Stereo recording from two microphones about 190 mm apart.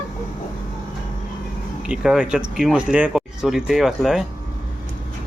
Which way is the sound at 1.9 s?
5° right (ahead or behind).